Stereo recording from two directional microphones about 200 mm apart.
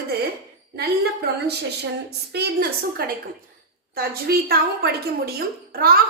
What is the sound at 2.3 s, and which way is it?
A woman's voice, 55° right (ahead or behind).